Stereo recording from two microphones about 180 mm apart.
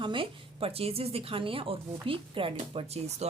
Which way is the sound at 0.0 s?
30° right (ahead or behind).